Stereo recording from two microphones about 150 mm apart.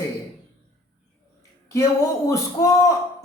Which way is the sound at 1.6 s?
20° left (ahead or behind).